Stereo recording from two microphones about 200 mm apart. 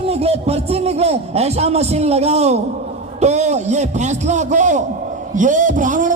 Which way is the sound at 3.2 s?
35° right (ahead or behind).